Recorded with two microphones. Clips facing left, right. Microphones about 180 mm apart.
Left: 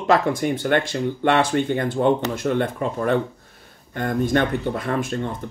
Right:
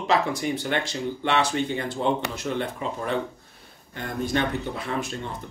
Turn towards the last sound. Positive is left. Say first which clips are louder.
# left 6 dB
turn(degrees=50)  # may be behind; listen again after turning